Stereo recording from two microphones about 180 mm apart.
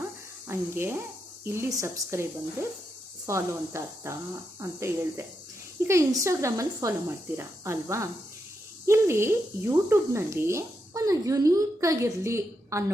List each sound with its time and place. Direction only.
0.4 s speech: 15° right (ahead or behind)